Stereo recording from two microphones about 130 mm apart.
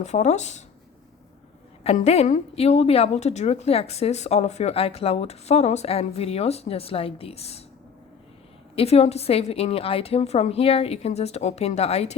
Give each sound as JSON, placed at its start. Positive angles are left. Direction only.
{"t": 0.0, "sound": "speech", "side_deg": 60}
{"t": 2.0, "sound": "a woman's voice", "side_deg": 60}
{"t": 8.7, "sound": "a woman's voice", "side_deg": 50}